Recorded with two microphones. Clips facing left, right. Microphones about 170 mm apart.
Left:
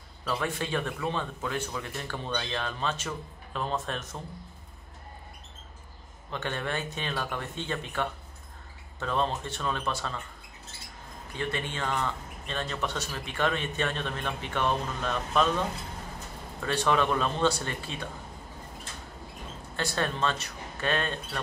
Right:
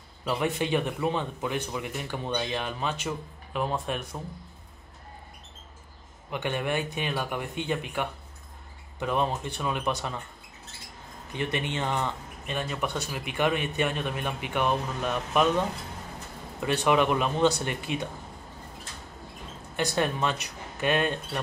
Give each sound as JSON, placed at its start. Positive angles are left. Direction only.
{"t": 0.2, "sound": "speech", "side_deg": -15}
{"t": 6.3, "sound": "speech", "side_deg": -15}
{"t": 11.3, "sound": "speech", "side_deg": -20}
{"t": 19.7, "sound": "speech", "side_deg": -15}